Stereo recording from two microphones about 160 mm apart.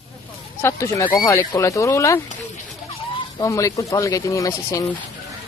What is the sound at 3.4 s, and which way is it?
Speech, 20° left (ahead or behind).